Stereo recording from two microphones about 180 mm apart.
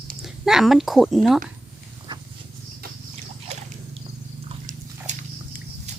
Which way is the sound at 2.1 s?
25° right (ahead or behind).